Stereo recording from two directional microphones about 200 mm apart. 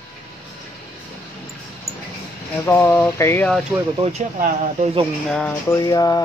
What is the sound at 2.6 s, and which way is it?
Speech, 10° left (ahead or behind).